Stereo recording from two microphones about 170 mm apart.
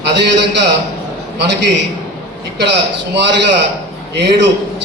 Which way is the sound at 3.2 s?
90° right.